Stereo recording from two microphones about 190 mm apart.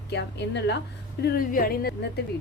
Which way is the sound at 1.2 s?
50° left (ahead or behind).